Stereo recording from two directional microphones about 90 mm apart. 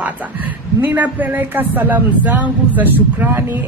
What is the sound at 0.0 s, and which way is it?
A woman's voice, 20° right (ahead or behind).